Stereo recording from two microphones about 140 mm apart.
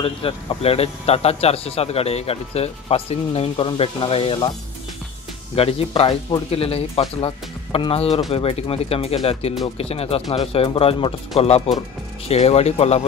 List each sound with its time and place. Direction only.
0.0 s speech: 40° left (ahead or behind)
5.6 s speech: 45° left (ahead or behind)